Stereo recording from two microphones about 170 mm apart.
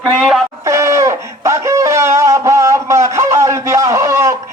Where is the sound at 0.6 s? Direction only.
15° right (ahead or behind).